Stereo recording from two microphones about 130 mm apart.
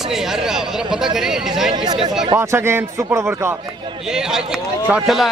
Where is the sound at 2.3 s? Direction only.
20° right (ahead or behind).